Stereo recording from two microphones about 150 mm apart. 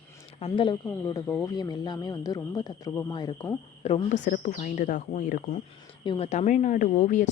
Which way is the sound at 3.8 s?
50° left (ahead or behind).